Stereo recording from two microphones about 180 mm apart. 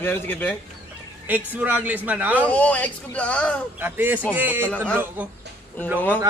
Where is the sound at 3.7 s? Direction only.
10° right (ahead or behind).